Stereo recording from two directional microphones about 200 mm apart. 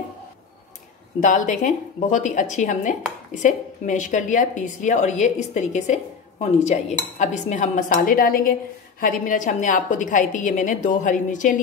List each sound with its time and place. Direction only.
1.2 s a woman's voice: 40° left (ahead or behind)